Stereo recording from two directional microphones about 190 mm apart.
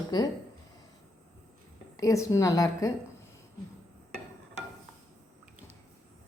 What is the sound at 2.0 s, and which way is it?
Speech, 15° left (ahead or behind).